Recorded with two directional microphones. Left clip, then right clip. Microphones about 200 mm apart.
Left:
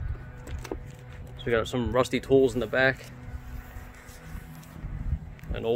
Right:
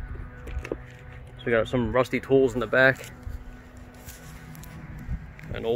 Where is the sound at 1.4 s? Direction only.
25° right (ahead or behind).